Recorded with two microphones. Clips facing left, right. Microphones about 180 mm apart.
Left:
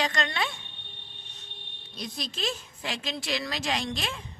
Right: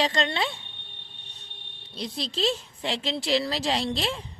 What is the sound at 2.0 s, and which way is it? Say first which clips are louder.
Speech: right 5 dB; 30° right (ahead or behind).